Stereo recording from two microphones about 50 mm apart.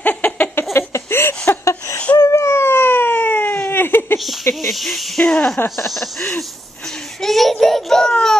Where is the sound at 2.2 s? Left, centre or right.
Left.